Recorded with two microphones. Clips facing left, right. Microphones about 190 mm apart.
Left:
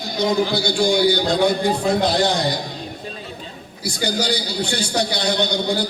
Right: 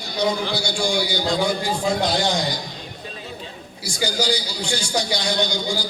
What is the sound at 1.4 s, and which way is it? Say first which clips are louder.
A man's voice: left 4 dB; 60° left (ahead or behind).